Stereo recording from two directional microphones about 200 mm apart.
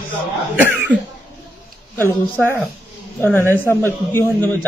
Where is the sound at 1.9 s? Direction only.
10° left (ahead or behind).